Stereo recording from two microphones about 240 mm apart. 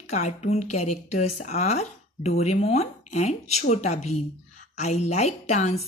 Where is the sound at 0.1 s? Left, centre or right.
Left.